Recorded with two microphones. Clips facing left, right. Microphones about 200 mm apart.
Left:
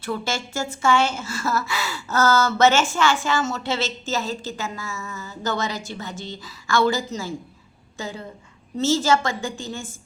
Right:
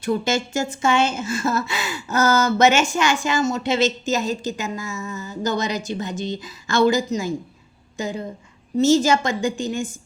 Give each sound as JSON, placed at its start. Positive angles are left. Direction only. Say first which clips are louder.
{"t": 0.0, "sound": "a woman's voice", "louder": "right 6 dB", "side_deg": -20}